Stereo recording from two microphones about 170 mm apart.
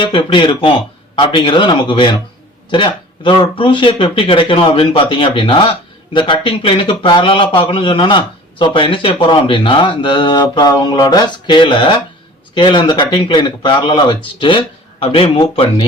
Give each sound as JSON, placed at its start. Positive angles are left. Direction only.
{"t": 0.0, "sound": "speech", "side_deg": 30}